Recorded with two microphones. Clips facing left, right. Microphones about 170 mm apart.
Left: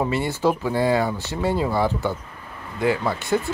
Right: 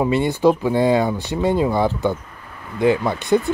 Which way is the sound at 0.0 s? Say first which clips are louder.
Right 5 dB; 20° right (ahead or behind).